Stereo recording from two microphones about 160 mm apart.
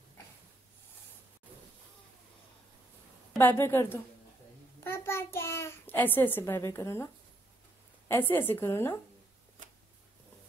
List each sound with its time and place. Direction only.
3.3 s a woman's voice: 15° left (ahead or behind)
8.1 s a woman's voice: 15° left (ahead or behind)
9.6 s a sound: 50° right (ahead or behind)